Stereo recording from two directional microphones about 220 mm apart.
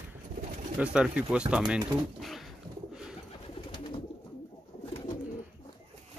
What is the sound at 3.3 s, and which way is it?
Bird, 20° left (ahead or behind).